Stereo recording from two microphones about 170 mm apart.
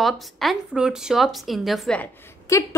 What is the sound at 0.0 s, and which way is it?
Speech, centre (ahead or behind).